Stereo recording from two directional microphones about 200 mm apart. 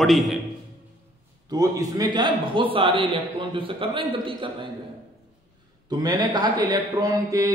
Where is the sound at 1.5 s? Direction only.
20° right (ahead or behind).